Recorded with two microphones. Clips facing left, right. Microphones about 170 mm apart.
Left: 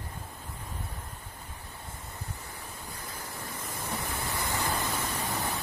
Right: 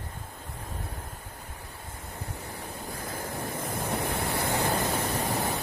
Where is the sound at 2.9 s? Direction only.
50° right (ahead or behind).